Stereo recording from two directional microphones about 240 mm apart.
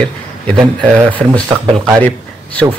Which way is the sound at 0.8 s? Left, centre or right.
Centre.